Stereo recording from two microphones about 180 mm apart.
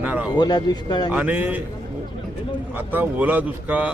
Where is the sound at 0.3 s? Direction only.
25° left (ahead or behind).